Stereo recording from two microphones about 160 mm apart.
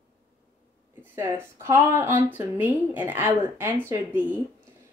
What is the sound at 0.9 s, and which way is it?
Speech, 15° right (ahead or behind).